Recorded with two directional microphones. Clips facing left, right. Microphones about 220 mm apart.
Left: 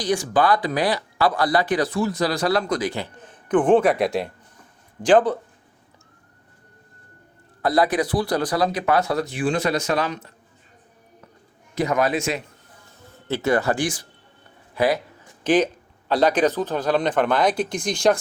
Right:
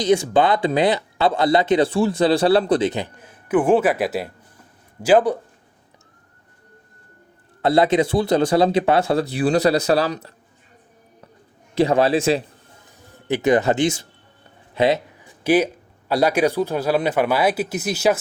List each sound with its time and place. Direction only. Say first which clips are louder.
0.0 s a man's voice: right 4 dB; 25° right (ahead or behind)
2.9 s a man's voice: right 3 dB; 15° right (ahead or behind)
7.6 s a man's voice: right 4 dB; 25° right (ahead or behind)
11.7 s a man's voice: right 5 dB; 30° right (ahead or behind)
12.8 s speech: left 2 dB; 15° right (ahead or behind)
14.8 s a sound: right 3 dB; 25° right (ahead or behind)
15.4 s a man's voice: right 1 dB; 10° right (ahead or behind)